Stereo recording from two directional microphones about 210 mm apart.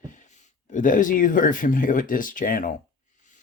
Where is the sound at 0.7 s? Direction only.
40° left (ahead or behind).